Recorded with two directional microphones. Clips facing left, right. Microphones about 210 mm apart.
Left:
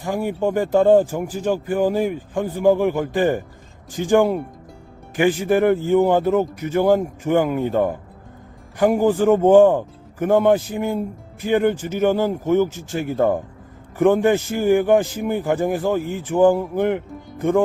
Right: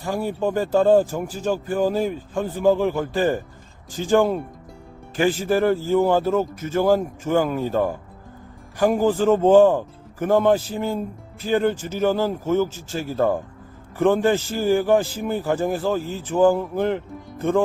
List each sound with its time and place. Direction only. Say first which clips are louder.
0.0 s a man's voice: left 2 dB; 15° left (ahead or behind)